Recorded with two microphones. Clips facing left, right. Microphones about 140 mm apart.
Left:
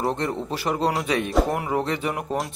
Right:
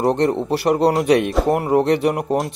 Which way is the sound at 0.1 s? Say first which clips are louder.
Right 9 dB; 65° right (ahead or behind).